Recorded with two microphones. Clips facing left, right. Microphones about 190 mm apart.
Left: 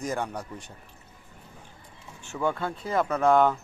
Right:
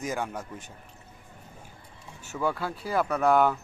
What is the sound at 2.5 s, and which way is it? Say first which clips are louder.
Speech: left 1 dB; 5° right (ahead or behind).